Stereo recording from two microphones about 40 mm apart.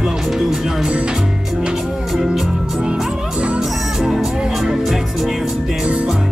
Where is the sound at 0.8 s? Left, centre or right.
Centre.